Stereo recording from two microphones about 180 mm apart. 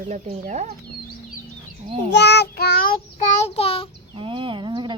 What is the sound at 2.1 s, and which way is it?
Child singing, 70° left (ahead or behind).